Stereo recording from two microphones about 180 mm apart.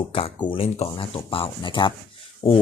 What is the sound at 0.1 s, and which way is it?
Speech, 30° left (ahead or behind).